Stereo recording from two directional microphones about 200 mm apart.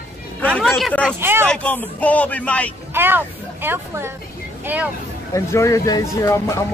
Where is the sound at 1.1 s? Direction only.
10° right (ahead or behind).